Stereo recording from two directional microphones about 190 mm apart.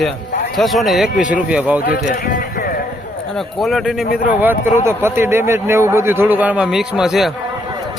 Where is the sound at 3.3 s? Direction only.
Centre (ahead or behind).